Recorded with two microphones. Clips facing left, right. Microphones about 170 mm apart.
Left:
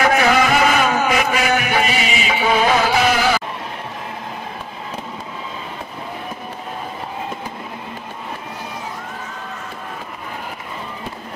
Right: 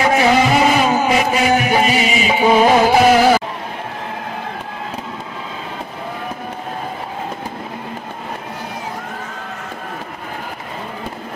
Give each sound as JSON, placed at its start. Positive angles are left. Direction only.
{"t": 0.0, "sound": "music", "side_deg": -25}